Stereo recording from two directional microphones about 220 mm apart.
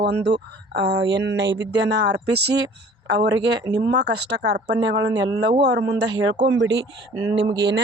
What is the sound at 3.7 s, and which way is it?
Speech, 50° right (ahead or behind).